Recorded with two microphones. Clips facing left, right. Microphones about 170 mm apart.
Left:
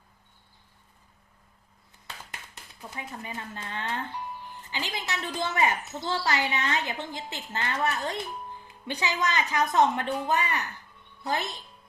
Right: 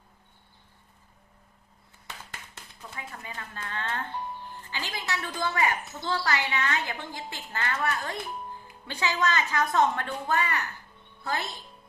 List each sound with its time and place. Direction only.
2.9 s a woman's voice: 20° left (ahead or behind)